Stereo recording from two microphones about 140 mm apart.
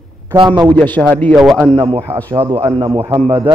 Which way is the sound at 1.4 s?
5° right (ahead or behind).